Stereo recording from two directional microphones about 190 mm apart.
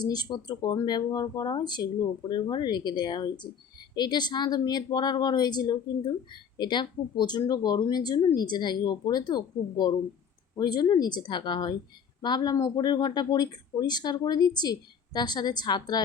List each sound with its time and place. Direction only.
0.0 s speech: 20° left (ahead or behind)